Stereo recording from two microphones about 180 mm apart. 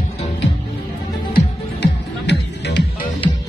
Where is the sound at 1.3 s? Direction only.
65° left (ahead or behind).